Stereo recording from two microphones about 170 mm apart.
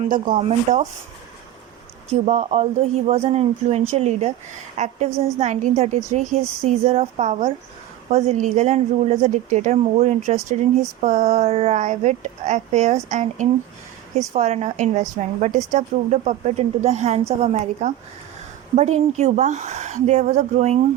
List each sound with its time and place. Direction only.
0.1 s speech: 50° right (ahead or behind)
2.0 s a woman's voice: 40° right (ahead or behind)